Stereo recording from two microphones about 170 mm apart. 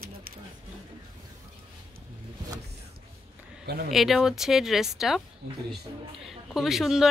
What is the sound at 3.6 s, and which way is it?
Speech, 65° right (ahead or behind).